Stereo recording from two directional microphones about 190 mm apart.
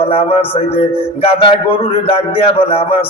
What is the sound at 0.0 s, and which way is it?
Music, 30° left (ahead or behind).